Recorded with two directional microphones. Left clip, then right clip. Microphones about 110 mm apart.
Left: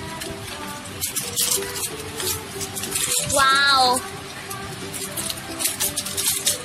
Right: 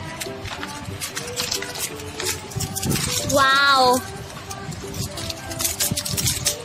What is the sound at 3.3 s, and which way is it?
Child singing, 90° right.